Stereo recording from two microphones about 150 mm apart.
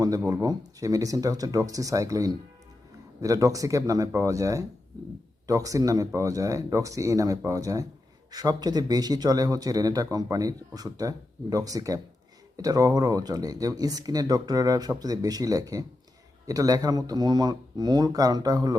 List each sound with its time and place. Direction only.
0.4 s speech: 25° right (ahead or behind)